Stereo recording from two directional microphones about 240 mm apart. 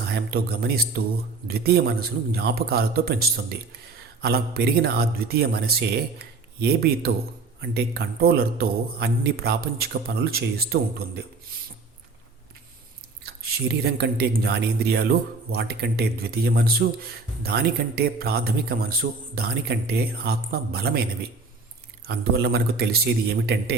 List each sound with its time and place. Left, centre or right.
0.1 s a man's voice: right
13.2 s a man's voice: right
22.0 s a man's voice: right